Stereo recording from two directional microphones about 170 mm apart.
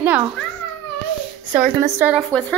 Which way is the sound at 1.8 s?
15° right (ahead or behind).